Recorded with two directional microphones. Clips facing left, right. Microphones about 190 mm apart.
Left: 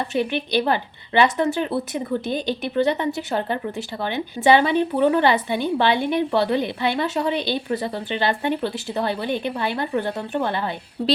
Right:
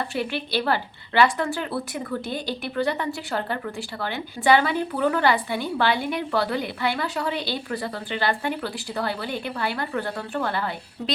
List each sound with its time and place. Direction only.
0.0 s a woman's voice: 20° left (ahead or behind)